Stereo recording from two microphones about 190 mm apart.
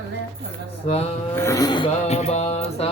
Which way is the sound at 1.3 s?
15° left (ahead or behind).